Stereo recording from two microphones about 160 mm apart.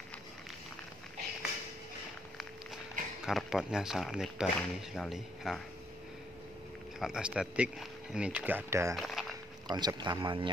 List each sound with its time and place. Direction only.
3.3 s speech: centre (ahead or behind)
7.0 s speech: 5° right (ahead or behind)
8.9 s a sound: centre (ahead or behind)
9.7 s speech: 25° right (ahead or behind)